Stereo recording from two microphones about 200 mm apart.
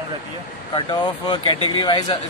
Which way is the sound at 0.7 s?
25° left (ahead or behind).